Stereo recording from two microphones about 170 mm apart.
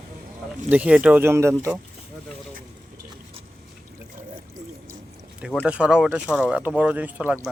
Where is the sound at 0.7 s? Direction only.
10° right (ahead or behind).